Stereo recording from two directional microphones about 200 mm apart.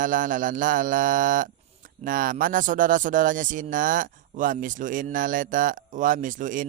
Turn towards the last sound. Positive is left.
turn(degrees=-40)  # may be behind; listen again after turning